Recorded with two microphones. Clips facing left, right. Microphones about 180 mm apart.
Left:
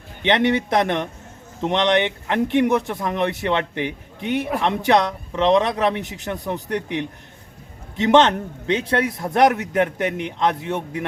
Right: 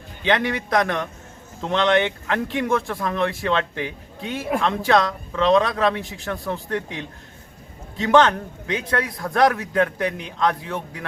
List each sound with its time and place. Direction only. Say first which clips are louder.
0.2 s a man's voice: left 4 dB; 25° left (ahead or behind)